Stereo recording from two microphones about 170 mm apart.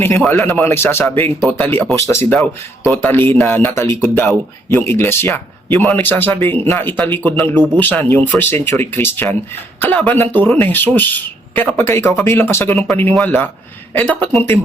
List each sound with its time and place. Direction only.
0.3 s speech: 10° left (ahead or behind)
4.0 s speech: centre (ahead or behind)
4.7 s speech: 15° left (ahead or behind)